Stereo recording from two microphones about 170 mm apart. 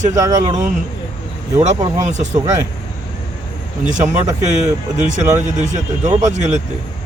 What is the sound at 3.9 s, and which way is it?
Speech, 45° right (ahead or behind).